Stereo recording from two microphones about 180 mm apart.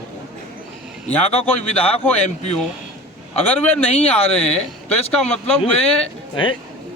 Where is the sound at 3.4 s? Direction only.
35° left (ahead or behind).